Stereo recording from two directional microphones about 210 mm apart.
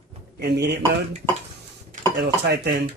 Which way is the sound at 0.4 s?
50° right (ahead or behind).